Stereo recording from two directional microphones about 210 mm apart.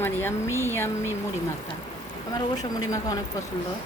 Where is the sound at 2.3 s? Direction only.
15° left (ahead or behind).